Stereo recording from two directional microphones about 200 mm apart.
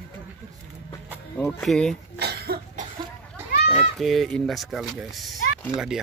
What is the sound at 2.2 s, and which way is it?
Cough, 50° right (ahead or behind).